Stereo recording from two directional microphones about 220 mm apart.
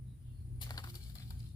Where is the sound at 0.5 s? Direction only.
20° left (ahead or behind).